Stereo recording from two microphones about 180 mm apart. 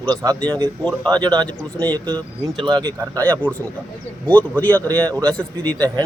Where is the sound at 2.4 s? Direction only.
25° right (ahead or behind).